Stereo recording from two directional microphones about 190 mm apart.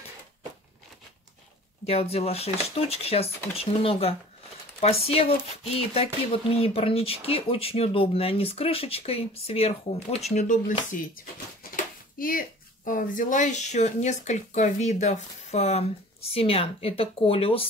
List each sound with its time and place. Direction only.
1.9 s speech: 30° left (ahead or behind)